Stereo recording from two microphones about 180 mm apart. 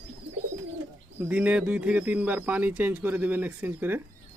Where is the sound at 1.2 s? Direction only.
10° right (ahead or behind).